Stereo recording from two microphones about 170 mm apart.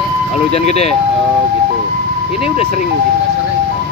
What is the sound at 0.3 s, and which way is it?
Speech, 40° left (ahead or behind).